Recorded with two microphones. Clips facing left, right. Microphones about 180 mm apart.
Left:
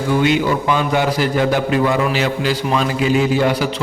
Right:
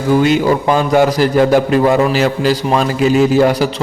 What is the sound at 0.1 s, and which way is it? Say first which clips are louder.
A man's voice: right 5 dB; 40° right (ahead or behind).